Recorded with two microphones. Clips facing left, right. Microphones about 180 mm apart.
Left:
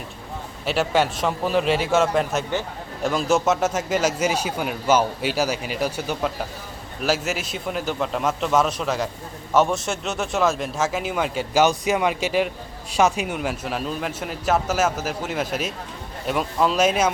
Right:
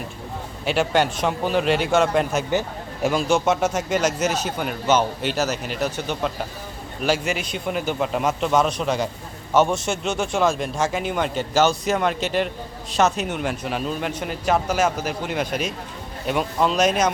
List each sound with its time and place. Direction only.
0.6 s a man's voice: centre (ahead or behind)